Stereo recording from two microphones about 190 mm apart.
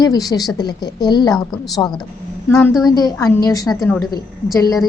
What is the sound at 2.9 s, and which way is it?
A woman's voice, 20° left (ahead or behind).